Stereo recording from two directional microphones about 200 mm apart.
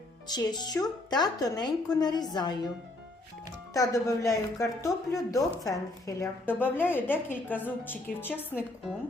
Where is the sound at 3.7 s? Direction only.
15° left (ahead or behind).